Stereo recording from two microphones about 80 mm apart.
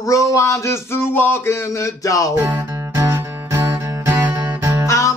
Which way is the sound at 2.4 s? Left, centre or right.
Right.